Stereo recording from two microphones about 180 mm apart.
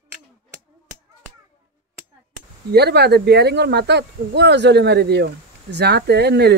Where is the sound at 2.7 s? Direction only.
65° right (ahead or behind).